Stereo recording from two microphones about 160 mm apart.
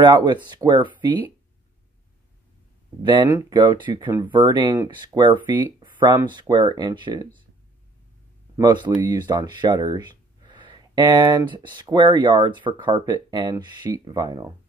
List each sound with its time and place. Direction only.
0.0 s speech: 30° right (ahead or behind)
3.0 s speech: 30° right (ahead or behind)
8.5 s speech: 25° right (ahead or behind)